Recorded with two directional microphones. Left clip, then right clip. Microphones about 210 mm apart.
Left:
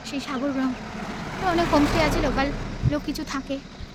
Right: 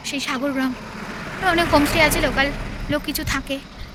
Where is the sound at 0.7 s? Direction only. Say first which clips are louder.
Right 2 dB; 40° left (ahead or behind).